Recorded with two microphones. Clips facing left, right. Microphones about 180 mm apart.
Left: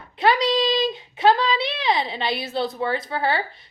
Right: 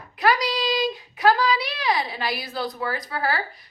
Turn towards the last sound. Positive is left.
turn(degrees=25)  # may be behind; listen again after turning